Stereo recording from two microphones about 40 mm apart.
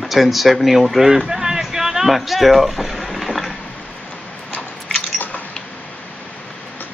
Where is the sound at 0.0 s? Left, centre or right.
Centre.